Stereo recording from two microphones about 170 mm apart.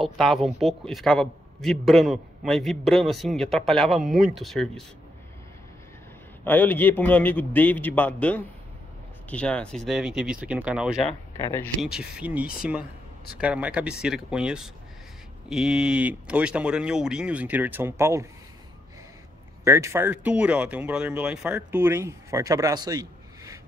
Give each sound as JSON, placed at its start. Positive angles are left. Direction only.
{"t": 0.0, "sound": "a man's voice", "side_deg": 0}
{"t": 6.4, "sound": "a man's voice", "side_deg": 10}
{"t": 11.3, "sound": "a man's voice", "side_deg": 15}
{"t": 11.8, "sound": "a man's voice", "side_deg": -5}
{"t": 19.6, "sound": "a man's voice", "side_deg": -15}